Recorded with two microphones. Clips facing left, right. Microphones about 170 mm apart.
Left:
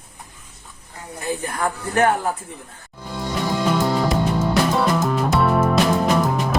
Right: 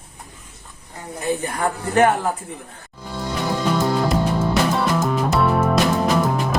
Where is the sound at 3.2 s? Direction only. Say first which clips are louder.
Left 1 dB; 5° left (ahead or behind).